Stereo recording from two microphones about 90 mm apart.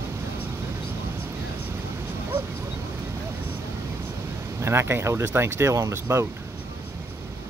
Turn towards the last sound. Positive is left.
turn(degrees=-30)  # may be behind; listen again after turning